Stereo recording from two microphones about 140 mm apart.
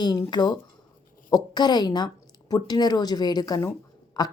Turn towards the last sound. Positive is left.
turn(degrees=30)  # may be behind; listen again after turning